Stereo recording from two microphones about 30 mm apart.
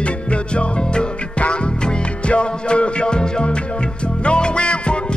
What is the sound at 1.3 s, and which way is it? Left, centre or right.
Music, left.